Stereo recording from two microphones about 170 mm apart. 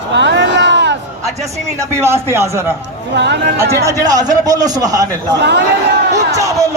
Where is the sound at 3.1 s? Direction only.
90° right.